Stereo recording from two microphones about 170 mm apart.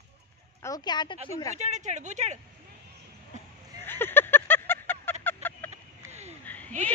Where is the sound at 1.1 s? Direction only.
40° right (ahead or behind).